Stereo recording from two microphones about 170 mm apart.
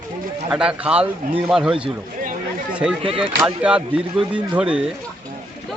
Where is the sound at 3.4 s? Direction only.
5° right (ahead or behind).